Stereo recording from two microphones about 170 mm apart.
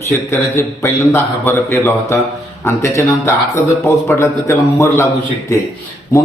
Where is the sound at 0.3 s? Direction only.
15° left (ahead or behind).